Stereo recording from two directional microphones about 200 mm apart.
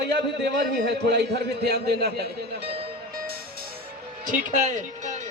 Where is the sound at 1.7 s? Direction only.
55° right (ahead or behind).